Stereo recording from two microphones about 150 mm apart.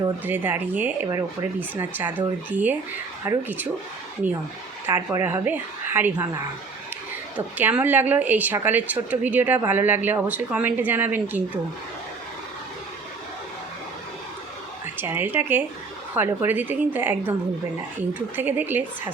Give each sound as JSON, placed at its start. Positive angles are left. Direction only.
{"t": 0.3, "sound": "a woman's voice", "side_deg": -15}
{"t": 4.9, "sound": "a woman's voice", "side_deg": -15}
{"t": 7.3, "sound": "a woman's voice", "side_deg": -10}
{"t": 14.9, "sound": "a woman's voice", "side_deg": -15}